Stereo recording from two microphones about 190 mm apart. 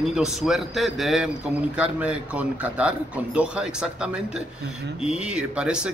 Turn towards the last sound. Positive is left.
turn(degrees=-5)  # may be behind; listen again after turning